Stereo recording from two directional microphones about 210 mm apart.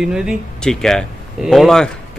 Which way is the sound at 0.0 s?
5° right (ahead or behind).